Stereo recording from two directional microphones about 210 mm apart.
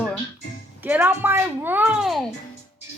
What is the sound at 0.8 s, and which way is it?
A child's voice, 10° right (ahead or behind).